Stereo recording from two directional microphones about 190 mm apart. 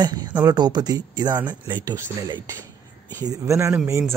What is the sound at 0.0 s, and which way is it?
Speech, 20° right (ahead or behind).